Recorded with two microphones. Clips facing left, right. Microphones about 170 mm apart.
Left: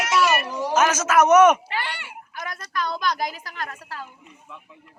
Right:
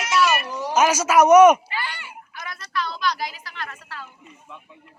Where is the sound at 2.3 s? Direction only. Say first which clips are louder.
Even; 45° left (ahead or behind).